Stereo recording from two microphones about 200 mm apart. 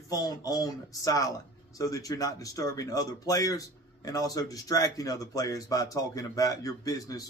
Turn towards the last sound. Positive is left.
turn(degrees=20)  # may be behind; listen again after turning